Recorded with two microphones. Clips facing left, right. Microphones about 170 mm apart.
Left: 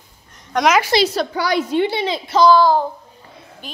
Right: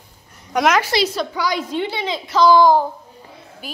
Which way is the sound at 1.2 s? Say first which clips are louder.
Left 3 dB; 65° left (ahead or behind).